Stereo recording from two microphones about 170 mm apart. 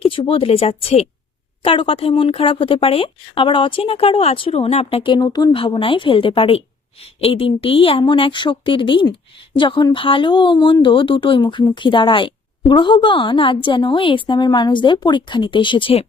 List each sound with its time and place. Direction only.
0.0 s a woman's voice: 30° left (ahead or behind)